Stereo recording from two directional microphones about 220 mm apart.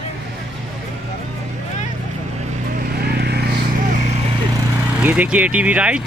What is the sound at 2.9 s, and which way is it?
Vehicle, 45° right (ahead or behind).